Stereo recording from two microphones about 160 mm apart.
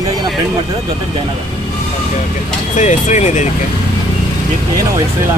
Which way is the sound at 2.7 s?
50° left (ahead or behind).